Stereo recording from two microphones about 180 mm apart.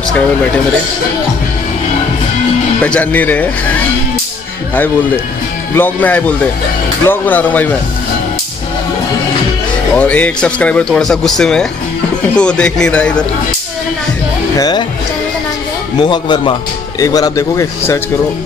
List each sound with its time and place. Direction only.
2.8 s a man's voice: 10° left (ahead or behind)
4.7 s a man's voice: 10° left (ahead or behind)
9.9 s speech: 10° left (ahead or behind)
14.6 s speech: 25° left (ahead or behind)
16.0 s a man's voice: 25° left (ahead or behind)